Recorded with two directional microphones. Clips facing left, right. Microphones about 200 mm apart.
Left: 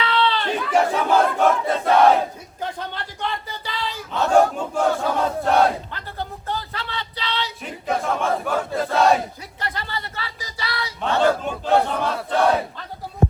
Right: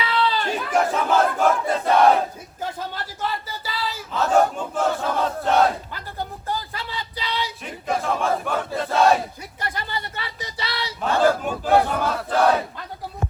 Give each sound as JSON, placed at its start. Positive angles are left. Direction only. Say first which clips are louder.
{"t": 0.1, "sound": "chatter", "louder": "left 1 dB", "side_deg": -5}
{"t": 0.4, "sound": "battle cry", "louder": "left 2 dB", "side_deg": 0}
{"t": 6.5, "sound": "a sound", "louder": "even", "side_deg": -10}
{"t": 7.6, "sound": "battle cry", "louder": "left 3 dB", "side_deg": 0}
{"t": 9.7, "sound": "a sound", "louder": "even", "side_deg": -15}
{"t": 10.8, "sound": "battle cry", "louder": "even", "side_deg": -5}